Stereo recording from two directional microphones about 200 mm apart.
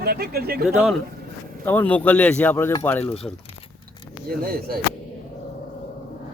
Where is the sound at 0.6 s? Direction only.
Centre (ahead or behind).